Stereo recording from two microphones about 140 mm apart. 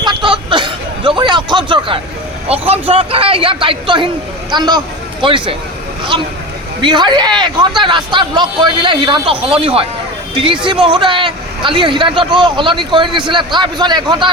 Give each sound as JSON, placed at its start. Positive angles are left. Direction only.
{"t": 0.0, "sound": "a sound", "side_deg": -35}
{"t": 2.5, "sound": "a man's voice", "side_deg": -45}
{"t": 6.8, "sound": "a man's voice", "side_deg": -30}